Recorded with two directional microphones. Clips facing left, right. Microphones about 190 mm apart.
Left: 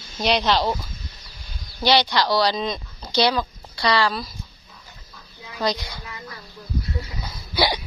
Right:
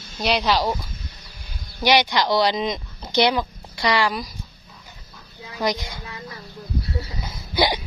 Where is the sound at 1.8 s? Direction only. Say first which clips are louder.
Even; 15° right (ahead or behind).